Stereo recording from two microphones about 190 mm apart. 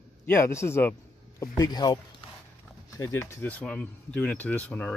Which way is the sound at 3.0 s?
15° left (ahead or behind).